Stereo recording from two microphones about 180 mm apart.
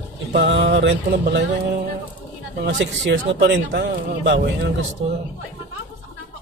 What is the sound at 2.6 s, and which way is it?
Speech, 80° right.